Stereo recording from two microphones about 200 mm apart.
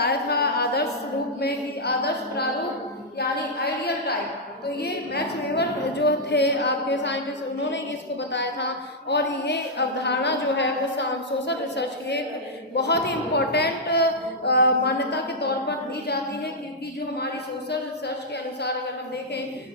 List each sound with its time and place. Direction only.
0.0 s a sound: 55° left (ahead or behind)
1.4 s a woman's voice: 55° left (ahead or behind)
8.3 s a woman's voice: 60° left (ahead or behind)